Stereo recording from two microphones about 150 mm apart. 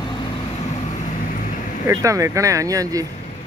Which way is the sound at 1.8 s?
20° right (ahead or behind).